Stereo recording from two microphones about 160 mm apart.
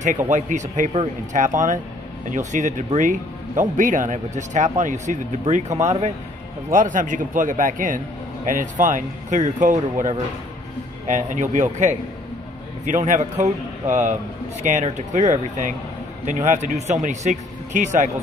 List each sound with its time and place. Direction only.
0.3 s a man's voice: 50° right (ahead or behind)